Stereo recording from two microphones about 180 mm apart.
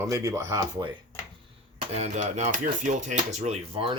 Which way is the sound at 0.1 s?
15° right (ahead or behind).